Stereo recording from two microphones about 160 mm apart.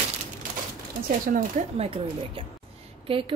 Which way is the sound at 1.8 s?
35° right (ahead or behind).